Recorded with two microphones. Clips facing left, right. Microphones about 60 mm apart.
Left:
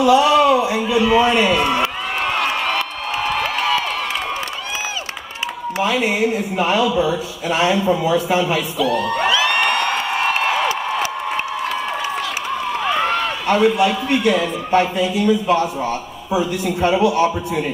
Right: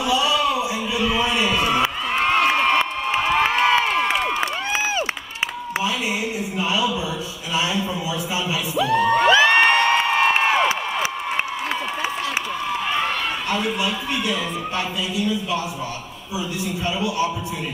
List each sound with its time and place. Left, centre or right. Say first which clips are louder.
0.0 s a sound: left 8 dB; left
1.1 s a man's voice: left 7 dB; left
2.1 s a sound: right 3 dB; right
3.3 s crowd: right 2 dB; right
5.8 s a man's voice: left 6 dB; left
8.7 s speech: right 5 dB; right
9.3 s music: right 3 dB; right
10.3 s a sound: even; right
13.5 s a man's voice: left 11 dB; left
16.6 s speech: left 9 dB; left